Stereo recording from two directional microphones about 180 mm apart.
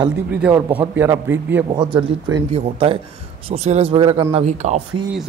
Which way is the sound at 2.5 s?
35° right (ahead or behind).